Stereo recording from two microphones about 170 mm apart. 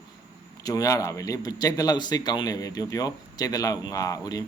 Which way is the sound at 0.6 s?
20° left (ahead or behind).